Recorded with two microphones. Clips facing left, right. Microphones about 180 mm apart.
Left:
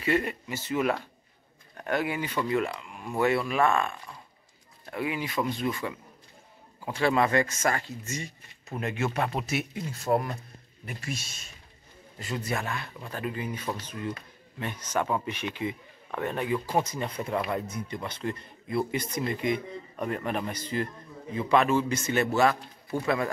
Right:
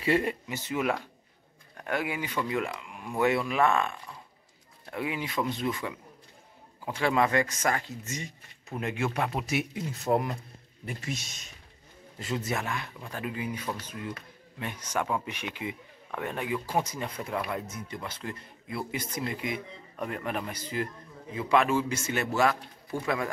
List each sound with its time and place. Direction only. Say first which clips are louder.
0.0 s speech: right 1 dB; 25° right (ahead or behind)
4.9 s speech: left 1 dB; 20° right (ahead or behind)
9.5 s speech: right 1 dB; 15° right (ahead or behind)
22.9 s speech: left 3 dB; 20° left (ahead or behind)